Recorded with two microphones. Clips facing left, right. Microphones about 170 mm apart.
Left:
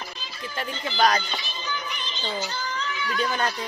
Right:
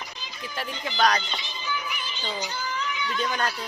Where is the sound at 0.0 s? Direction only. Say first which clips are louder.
Left 2 dB; 15° right (ahead or behind).